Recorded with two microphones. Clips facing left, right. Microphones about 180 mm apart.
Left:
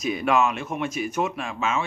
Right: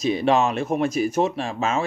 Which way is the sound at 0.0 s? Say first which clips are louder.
Right 3 dB; 30° right (ahead or behind).